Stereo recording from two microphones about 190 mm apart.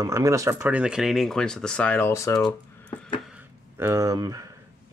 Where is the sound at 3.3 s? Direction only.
15° right (ahead or behind).